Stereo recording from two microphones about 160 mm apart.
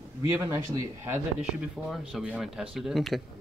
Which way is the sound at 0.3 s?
20° right (ahead or behind).